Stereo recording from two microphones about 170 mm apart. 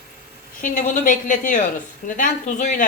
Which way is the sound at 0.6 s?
50° left (ahead or behind).